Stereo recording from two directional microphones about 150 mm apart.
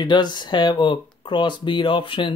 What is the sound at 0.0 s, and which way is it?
Speech, 30° left (ahead or behind).